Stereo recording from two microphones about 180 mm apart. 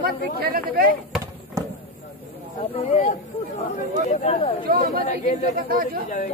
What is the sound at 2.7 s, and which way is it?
Speech, 35° left (ahead or behind).